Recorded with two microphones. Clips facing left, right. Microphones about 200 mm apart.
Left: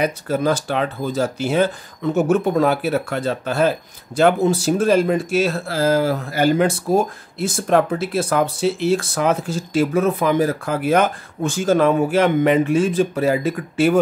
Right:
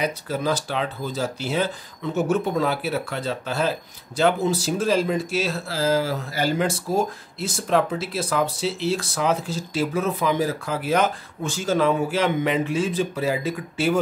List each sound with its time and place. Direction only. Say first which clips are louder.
0.0 s speech: left 5 dB; 50° left (ahead or behind)